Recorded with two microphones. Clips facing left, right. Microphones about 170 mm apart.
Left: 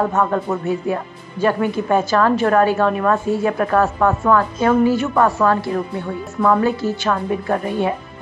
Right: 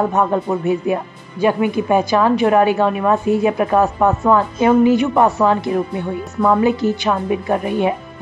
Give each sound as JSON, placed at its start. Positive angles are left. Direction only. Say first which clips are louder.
{"t": 0.1, "sound": "speech", "louder": "right 2 dB", "side_deg": -15}